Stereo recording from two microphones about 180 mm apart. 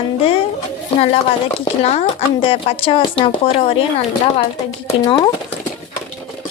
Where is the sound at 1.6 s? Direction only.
35° left (ahead or behind).